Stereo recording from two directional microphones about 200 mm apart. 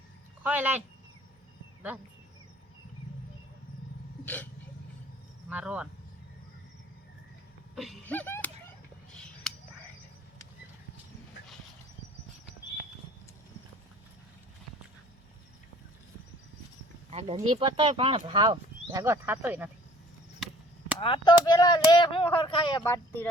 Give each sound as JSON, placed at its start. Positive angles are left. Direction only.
{"t": 0.4, "sound": "speech", "side_deg": -10}
{"t": 5.5, "sound": "speech", "side_deg": -5}
{"t": 7.8, "sound": "a sound", "side_deg": 5}
{"t": 17.1, "sound": "speech", "side_deg": -30}
{"t": 21.0, "sound": "speech", "side_deg": 25}
{"t": 22.8, "sound": "speech", "side_deg": 10}